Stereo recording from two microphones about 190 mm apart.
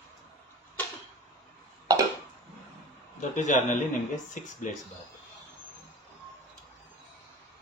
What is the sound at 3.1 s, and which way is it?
Speech, 40° left (ahead or behind).